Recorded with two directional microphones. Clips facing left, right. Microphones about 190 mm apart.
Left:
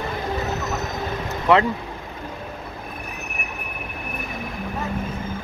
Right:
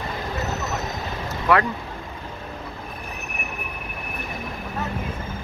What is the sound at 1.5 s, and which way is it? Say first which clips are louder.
Speech: left 3 dB; 20° left (ahead or behind).